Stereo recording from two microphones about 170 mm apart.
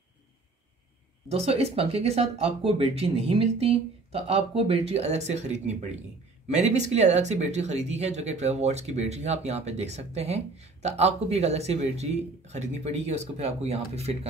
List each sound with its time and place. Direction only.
1.3 s speech: 35° right (ahead or behind)